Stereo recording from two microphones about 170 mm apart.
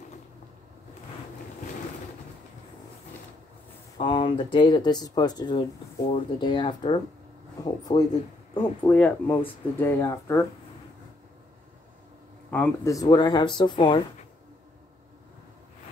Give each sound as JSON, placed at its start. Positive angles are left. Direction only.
{"t": 4.0, "sound": "speech", "side_deg": 30}
{"t": 8.9, "sound": "speech", "side_deg": 10}
{"t": 12.4, "sound": "speech", "side_deg": 10}